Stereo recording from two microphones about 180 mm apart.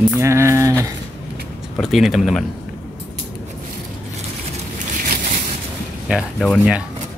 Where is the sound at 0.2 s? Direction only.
15° right (ahead or behind).